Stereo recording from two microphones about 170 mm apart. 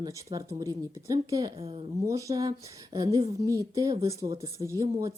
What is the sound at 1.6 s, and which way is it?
Speech, 35° right (ahead or behind).